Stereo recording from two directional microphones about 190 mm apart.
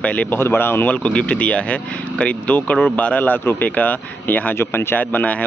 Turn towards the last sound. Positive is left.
turn(degrees=10)  # may be behind; listen again after turning